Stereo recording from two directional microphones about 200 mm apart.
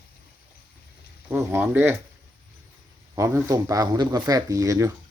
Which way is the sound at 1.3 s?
10° right (ahead or behind).